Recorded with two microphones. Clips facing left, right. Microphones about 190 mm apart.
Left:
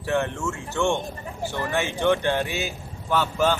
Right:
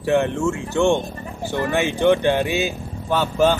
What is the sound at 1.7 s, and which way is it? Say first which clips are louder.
Speech: right 5 dB; 20° right (ahead or behind).